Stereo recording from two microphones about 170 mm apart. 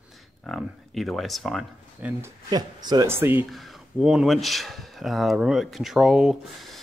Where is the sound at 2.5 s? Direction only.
25° right (ahead or behind); by 6.3 s 5° right (ahead or behind).